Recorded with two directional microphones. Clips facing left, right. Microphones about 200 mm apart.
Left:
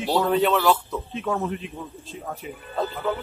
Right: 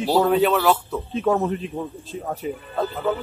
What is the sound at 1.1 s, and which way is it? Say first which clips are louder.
Speech: right 6 dB; 40° right (ahead or behind).